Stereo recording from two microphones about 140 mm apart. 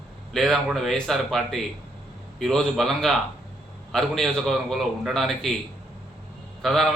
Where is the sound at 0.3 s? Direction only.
Centre (ahead or behind).